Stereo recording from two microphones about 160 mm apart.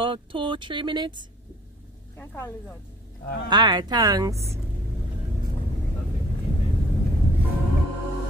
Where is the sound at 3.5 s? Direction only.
25° right (ahead or behind).